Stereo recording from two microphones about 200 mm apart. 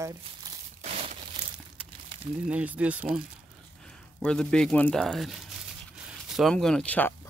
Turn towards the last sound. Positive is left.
turn(degrees=10)  # may be behind; listen again after turning